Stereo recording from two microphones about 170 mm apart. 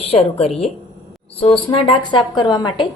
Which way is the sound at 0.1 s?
35° left (ahead or behind).